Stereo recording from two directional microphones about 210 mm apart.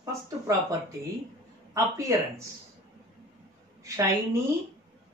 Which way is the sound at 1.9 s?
15° right (ahead or behind).